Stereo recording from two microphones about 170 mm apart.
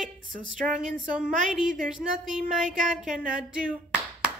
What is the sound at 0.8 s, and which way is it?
A woman's voice, 5° right (ahead or behind).